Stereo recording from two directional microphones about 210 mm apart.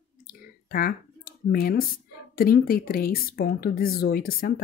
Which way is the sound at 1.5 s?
45° left (ahead or behind).